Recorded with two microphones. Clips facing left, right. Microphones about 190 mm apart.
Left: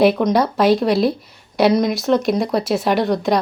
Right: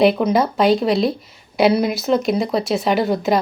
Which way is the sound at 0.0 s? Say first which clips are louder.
Left 1 dB; centre (ahead or behind).